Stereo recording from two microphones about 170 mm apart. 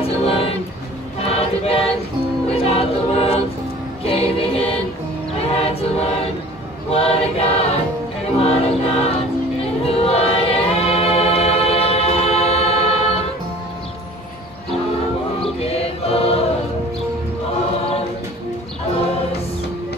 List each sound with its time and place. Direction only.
0.0 s music: 35° left (ahead or behind)
1.2 s choir: 35° left (ahead or behind)
4.0 s music: 35° left (ahead or behind)
5.5 s choir: 35° left (ahead or behind)
8.4 s music: 35° left (ahead or behind)
9.8 s choir: 35° left (ahead or behind)
15.6 s choir: 35° left (ahead or behind)